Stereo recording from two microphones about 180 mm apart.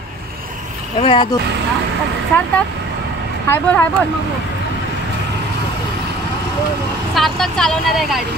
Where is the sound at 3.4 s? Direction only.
10° left (ahead or behind).